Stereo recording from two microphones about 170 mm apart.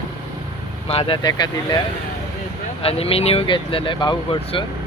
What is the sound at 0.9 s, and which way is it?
Speech, 35° left (ahead or behind).